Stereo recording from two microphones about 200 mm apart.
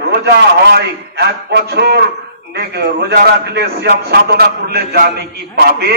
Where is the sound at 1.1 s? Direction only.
55° right (ahead or behind).